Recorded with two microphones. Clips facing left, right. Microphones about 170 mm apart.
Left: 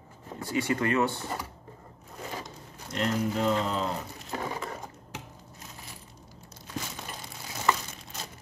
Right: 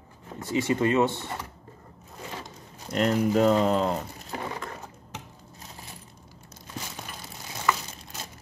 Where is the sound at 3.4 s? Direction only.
50° right (ahead or behind).